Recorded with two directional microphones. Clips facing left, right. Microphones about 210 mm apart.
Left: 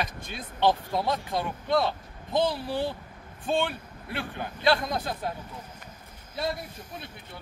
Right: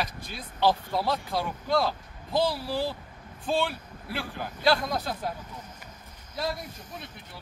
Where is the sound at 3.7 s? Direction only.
5° right (ahead or behind).